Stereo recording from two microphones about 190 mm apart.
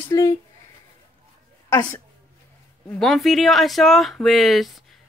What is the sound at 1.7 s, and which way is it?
Speech, 15° left (ahead or behind).